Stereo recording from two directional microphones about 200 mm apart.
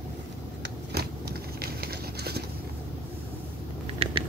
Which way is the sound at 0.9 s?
50° right (ahead or behind).